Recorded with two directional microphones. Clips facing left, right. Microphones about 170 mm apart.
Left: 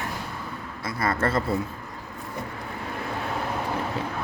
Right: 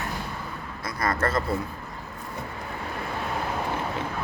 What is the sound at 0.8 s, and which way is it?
Speech, 25° left (ahead or behind).